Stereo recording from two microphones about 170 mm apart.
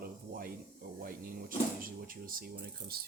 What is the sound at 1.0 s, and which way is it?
Speech, 55° right (ahead or behind).